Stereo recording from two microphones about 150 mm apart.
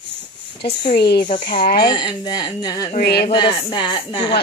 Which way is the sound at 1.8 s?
30° left (ahead or behind).